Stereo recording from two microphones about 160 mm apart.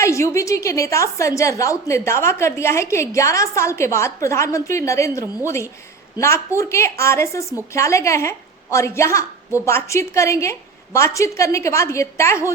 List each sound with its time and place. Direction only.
0.0 s a woman's voice: 20° left (ahead or behind)